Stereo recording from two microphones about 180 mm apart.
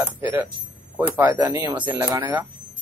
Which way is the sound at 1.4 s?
15° right (ahead or behind).